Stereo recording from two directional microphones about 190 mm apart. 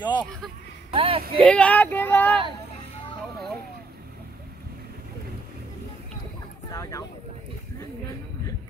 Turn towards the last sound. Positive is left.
turn(degrees=15)  # may be behind; listen again after turning